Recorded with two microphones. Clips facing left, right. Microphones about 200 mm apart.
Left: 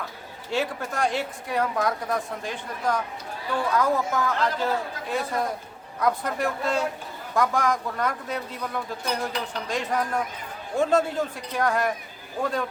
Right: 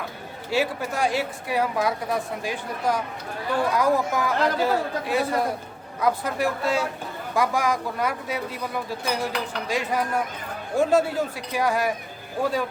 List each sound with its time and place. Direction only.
0.5 s speech: 5° right (ahead or behind)